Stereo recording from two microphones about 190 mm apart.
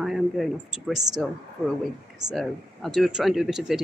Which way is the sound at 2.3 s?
Centre (ahead or behind).